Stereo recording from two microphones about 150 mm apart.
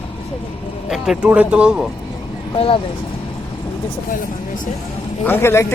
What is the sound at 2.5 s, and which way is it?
Speech, 35° left (ahead or behind).